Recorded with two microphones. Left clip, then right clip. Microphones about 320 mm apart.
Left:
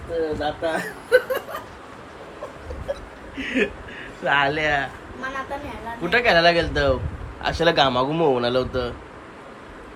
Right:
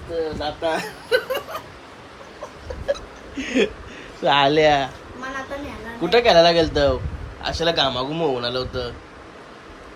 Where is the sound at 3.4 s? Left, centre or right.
Centre.